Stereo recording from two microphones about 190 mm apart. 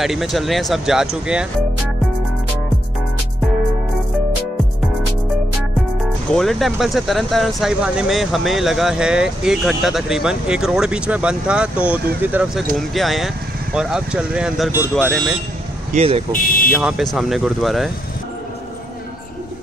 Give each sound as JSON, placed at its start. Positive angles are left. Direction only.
{"t": 0.0, "sound": "speech", "side_deg": 0}
{"t": 6.3, "sound": "speech", "side_deg": 0}
{"t": 15.0, "sound": "speech", "side_deg": 5}
{"t": 15.9, "sound": "speech", "side_deg": -35}
{"t": 16.3, "sound": "speech", "side_deg": 50}
{"t": 16.8, "sound": "speech", "side_deg": 0}